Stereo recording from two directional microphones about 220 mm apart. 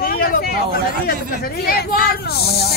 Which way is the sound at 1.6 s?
45° left (ahead or behind).